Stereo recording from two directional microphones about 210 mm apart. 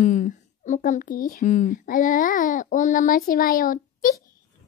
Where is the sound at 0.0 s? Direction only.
35° left (ahead or behind).